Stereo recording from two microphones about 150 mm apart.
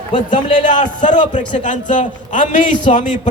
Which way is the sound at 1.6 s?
55° left (ahead or behind).